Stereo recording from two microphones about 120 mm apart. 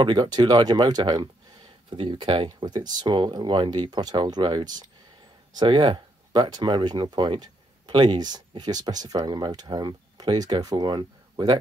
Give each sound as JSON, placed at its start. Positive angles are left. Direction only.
{"t": 0.0, "sound": "speech", "side_deg": -40}